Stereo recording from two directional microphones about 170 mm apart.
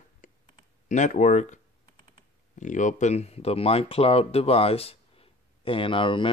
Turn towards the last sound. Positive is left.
turn(degrees=30)  # may be behind; listen again after turning